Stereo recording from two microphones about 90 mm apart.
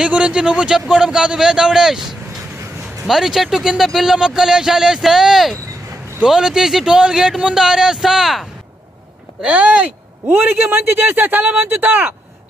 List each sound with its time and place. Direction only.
0.0 s a man's voice: 10° right (ahead or behind)